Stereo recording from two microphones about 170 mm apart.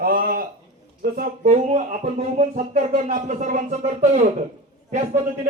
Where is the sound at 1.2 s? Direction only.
45° right (ahead or behind).